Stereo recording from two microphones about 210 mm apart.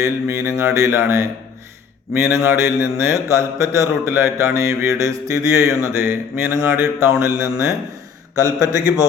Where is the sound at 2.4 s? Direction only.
10° right (ahead or behind).